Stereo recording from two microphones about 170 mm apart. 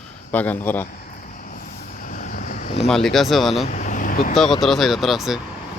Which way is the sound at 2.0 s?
50° left (ahead or behind).